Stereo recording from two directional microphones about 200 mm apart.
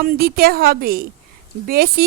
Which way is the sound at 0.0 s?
50° right (ahead or behind).